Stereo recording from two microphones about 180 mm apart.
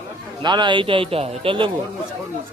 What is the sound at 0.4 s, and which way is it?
A man's voice, 25° right (ahead or behind).